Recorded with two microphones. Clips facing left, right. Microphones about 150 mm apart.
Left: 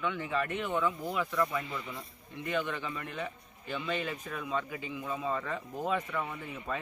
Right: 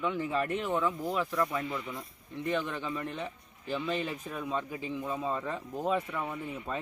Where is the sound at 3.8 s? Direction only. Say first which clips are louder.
Right 1 dB; centre (ahead or behind).